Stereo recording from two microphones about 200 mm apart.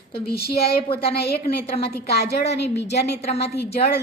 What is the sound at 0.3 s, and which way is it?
Speech, 50° left (ahead or behind).